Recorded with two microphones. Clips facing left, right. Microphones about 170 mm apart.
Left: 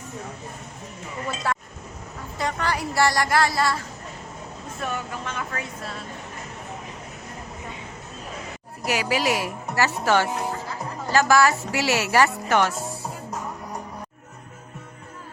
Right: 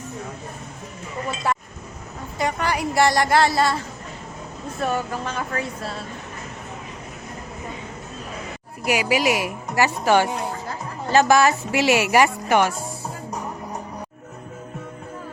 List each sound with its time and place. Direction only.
2.4 s a woman's voice: 15° right (ahead or behind)
4.8 s speech: 35° right (ahead or behind)
8.9 s speech: 15° right (ahead or behind)